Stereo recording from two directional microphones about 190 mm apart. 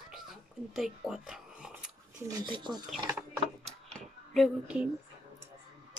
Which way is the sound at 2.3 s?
25° right (ahead or behind).